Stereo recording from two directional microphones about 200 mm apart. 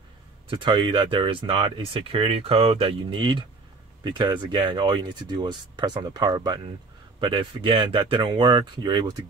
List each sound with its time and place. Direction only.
0.5 s speech: 25° right (ahead or behind)